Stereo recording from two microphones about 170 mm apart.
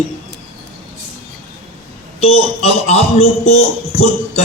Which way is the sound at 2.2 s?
40° left (ahead or behind).